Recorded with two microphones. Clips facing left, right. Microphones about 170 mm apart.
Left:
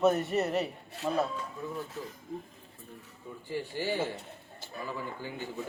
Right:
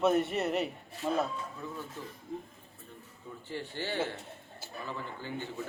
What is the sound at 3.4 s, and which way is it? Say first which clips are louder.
A man's voice: left 4 dB; 10° left (ahead or behind).